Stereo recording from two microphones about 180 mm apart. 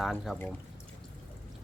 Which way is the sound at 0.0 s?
Centre (ahead or behind).